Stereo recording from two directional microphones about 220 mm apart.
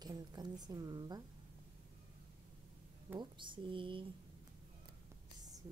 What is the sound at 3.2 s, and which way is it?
Speech, 20° right (ahead or behind).